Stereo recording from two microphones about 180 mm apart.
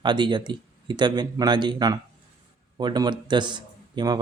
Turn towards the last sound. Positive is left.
turn(degrees=-25)  # may be behind; listen again after turning